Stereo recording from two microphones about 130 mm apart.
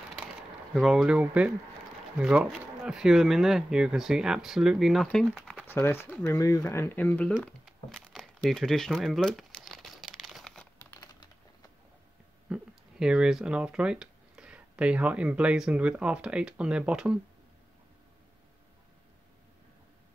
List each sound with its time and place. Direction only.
0.4 s speech: centre (ahead or behind)
5.7 s speech: 15° left (ahead or behind)
7.9 s crumpling: 5° left (ahead or behind)
10.8 s typing: 25° left (ahead or behind)
13.0 s speech: 5° right (ahead or behind)